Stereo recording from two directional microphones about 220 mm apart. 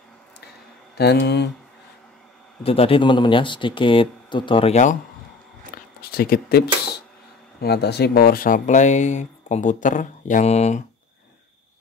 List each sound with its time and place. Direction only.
0.9 s speech: 50° left (ahead or behind)
2.6 s speech: 25° left (ahead or behind)
5.9 s speech: 45° left (ahead or behind)